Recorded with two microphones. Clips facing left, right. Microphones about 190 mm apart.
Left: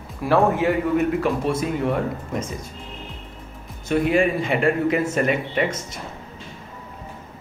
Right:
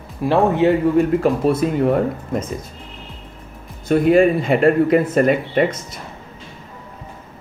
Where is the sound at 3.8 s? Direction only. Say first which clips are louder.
Right 6 dB; 40° right (ahead or behind).